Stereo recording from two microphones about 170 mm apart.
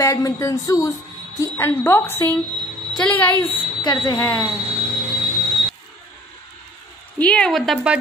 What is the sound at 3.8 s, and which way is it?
Speech, 25° left (ahead or behind).